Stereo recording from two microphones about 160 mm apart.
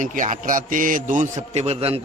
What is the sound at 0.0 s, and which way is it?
A man's voice, 55° right (ahead or behind).